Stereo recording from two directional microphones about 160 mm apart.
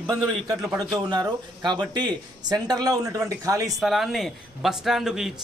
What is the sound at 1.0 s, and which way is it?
A man's voice, 25° right (ahead or behind).